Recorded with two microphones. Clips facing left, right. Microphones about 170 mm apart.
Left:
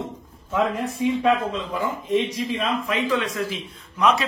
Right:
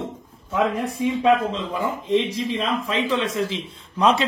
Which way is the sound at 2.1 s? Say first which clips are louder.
Right 1 dB; 30° right (ahead or behind).